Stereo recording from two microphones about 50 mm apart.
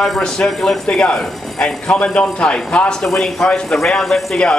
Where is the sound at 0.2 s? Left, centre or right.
Centre.